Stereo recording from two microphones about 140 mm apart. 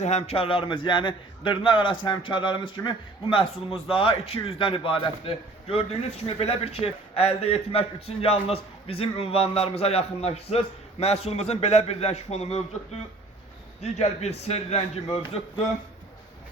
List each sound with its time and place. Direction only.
0.0 s a man's voice: 50° left (ahead or behind)